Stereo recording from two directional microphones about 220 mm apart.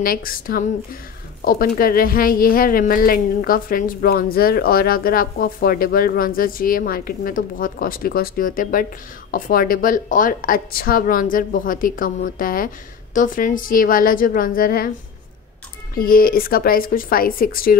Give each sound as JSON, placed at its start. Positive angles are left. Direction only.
{"t": 0.0, "sound": "a woman's voice", "side_deg": 40}
{"t": 15.9, "sound": "a woman's voice", "side_deg": 40}